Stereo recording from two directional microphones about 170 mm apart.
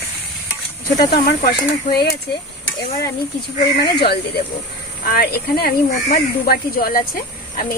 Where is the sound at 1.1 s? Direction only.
65° left (ahead or behind).